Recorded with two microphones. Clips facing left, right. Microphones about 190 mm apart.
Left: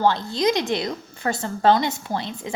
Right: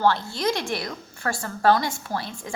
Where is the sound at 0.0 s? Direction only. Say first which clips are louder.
Left 2 dB; 20° left (ahead or behind).